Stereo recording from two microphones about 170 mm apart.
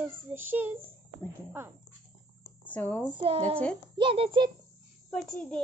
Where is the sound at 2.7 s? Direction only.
10° left (ahead or behind).